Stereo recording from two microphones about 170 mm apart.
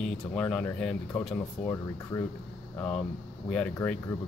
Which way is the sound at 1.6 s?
20° left (ahead or behind).